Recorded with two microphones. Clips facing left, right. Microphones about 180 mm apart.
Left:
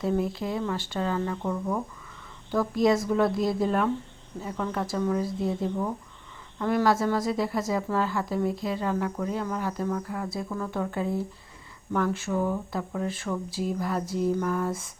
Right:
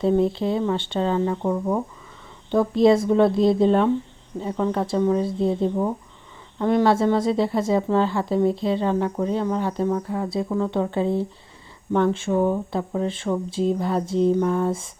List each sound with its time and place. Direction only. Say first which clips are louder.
0.0 s a woman's voice: right 7 dB; 25° right (ahead or behind)